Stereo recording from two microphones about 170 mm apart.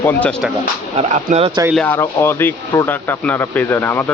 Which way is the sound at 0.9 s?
40° right (ahead or behind).